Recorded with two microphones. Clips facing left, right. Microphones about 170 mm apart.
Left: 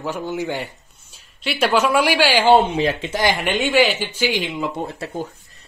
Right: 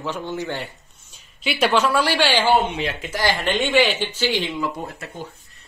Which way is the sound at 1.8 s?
15° left (ahead or behind).